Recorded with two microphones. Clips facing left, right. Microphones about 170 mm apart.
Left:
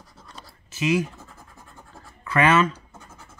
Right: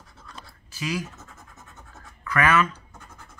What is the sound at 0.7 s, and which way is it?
Speech, 25° left (ahead or behind).